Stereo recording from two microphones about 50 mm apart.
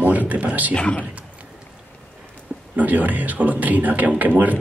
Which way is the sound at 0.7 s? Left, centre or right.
Left.